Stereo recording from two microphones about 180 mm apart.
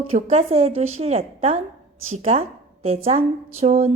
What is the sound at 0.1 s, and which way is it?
A woman's voice, 35° right (ahead or behind).